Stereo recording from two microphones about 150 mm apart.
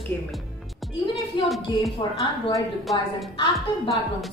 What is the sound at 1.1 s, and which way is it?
Speech, centre (ahead or behind).